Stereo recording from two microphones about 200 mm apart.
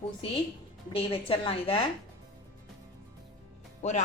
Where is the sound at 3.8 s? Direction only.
35° left (ahead or behind).